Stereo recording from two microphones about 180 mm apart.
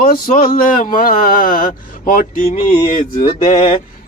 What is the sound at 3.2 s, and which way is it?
Music, 25° left (ahead or behind).